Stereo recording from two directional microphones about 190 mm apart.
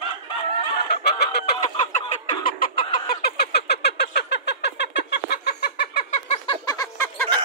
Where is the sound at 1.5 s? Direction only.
40° left (ahead or behind).